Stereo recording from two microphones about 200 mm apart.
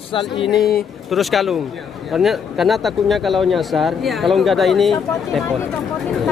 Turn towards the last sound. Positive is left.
turn(degrees=0)  # may be behind; listen again after turning